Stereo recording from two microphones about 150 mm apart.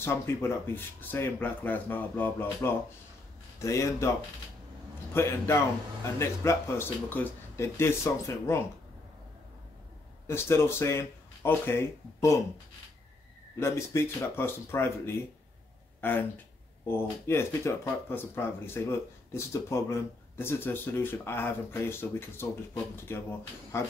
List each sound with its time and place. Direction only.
0.0 s speech: 15° left (ahead or behind)
5.1 s speech: 15° left (ahead or behind)
10.2 s speech: 15° left (ahead or behind)
13.6 s speech: 15° left (ahead or behind)
23.7 s speech: 20° left (ahead or behind)